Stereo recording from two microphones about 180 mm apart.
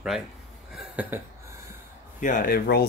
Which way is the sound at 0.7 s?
10° right (ahead or behind).